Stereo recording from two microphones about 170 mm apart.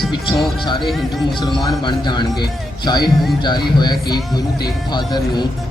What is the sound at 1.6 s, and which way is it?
A man's voice, 25° left (ahead or behind).